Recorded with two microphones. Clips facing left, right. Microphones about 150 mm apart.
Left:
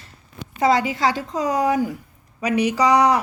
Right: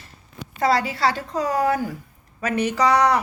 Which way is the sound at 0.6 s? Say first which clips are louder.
Left 2 dB; 20° left (ahead or behind).